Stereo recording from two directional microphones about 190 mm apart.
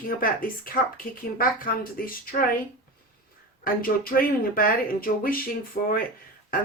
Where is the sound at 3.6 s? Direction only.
50° left (ahead or behind).